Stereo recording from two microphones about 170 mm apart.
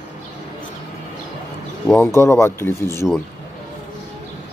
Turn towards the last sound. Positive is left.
turn(degrees=15)  # may be behind; listen again after turning